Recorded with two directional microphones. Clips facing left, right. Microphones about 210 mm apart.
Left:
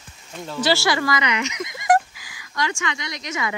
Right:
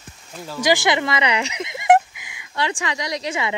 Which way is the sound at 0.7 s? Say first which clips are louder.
Right 2 dB; 20° right (ahead or behind).